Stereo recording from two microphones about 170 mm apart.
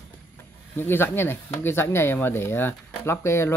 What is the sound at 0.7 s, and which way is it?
Speech, 15° left (ahead or behind).